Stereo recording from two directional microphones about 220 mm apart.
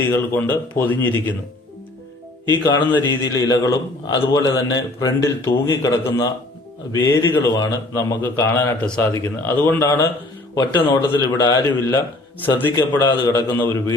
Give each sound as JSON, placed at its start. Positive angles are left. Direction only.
{"t": 0.0, "sound": "a man's voice", "side_deg": 10}
{"t": 2.5, "sound": "a man's voice", "side_deg": 20}